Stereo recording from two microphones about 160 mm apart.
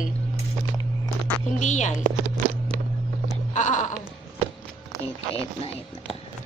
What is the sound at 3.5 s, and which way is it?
Music, 50° left (ahead or behind).